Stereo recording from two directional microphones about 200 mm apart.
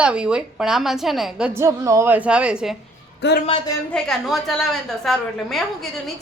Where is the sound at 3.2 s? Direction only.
60° left (ahead or behind).